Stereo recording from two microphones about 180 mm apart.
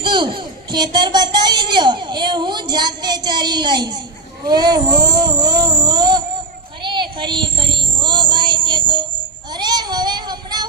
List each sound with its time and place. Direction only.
0.0 s a woman's voice: 25° right (ahead or behind)
4.4 s a sound: 20° right (ahead or behind)
6.8 s child singing: 25° right (ahead or behind)